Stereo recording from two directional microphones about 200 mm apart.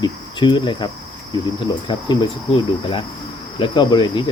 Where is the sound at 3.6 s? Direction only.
25° left (ahead or behind).